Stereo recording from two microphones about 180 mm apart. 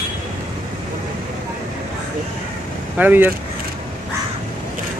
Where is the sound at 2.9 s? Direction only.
10° right (ahead or behind).